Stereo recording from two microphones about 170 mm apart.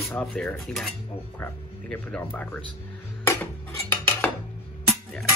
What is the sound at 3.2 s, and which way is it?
Music, 15° left (ahead or behind).